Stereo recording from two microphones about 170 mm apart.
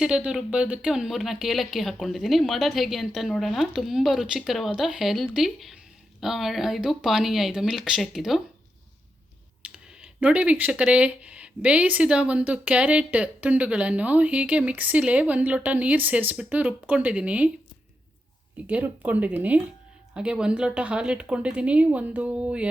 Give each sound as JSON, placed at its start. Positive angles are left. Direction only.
{"t": 0.0, "sound": "speech", "side_deg": -5}
{"t": 9.6, "sound": "speech", "side_deg": -5}
{"t": 18.7, "sound": "speech", "side_deg": -10}